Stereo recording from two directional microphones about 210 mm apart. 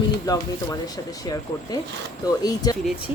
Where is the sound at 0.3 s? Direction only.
15° left (ahead or behind).